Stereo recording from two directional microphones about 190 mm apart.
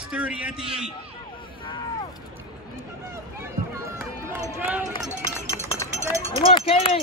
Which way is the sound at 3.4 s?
15° right (ahead or behind).